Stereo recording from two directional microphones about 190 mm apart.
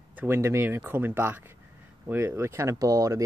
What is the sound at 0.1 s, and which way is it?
Speech, 10° right (ahead or behind).